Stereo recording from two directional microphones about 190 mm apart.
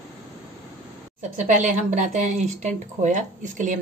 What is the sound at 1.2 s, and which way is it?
Speech, 40° right (ahead or behind).